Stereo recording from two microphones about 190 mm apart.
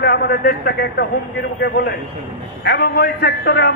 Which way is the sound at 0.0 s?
60° left (ahead or behind).